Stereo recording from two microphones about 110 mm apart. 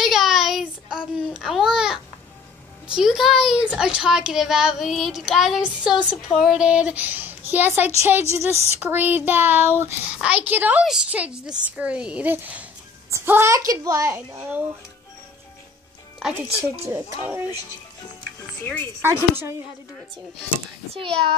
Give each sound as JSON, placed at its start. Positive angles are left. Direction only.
{"t": 0.0, "sound": "child singing", "side_deg": 0}
{"t": 2.9, "sound": "a child's voice", "side_deg": -5}
{"t": 5.6, "sound": "a woman's voice", "side_deg": -10}
{"t": 16.9, "sound": "a woman's voice", "side_deg": -20}
{"t": 18.6, "sound": "speech", "side_deg": 20}
{"t": 18.9, "sound": "a woman's voice", "side_deg": -20}
{"t": 20.9, "sound": "a child's voice", "side_deg": -55}